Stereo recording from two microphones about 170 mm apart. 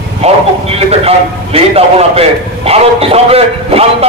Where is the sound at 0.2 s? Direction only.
40° right (ahead or behind).